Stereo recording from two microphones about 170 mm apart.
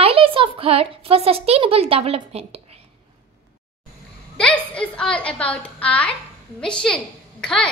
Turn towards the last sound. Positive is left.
turn(degrees=5)  # may be behind; listen again after turning